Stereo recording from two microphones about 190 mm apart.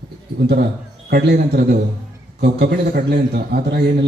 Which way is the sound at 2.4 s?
55° right (ahead or behind).